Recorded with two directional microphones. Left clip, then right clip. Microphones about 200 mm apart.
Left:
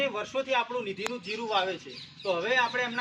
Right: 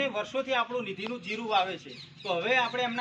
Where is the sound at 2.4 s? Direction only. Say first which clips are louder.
Even; 15° right (ahead or behind).